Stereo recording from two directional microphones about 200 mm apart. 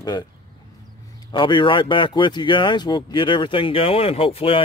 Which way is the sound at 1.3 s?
25° left (ahead or behind).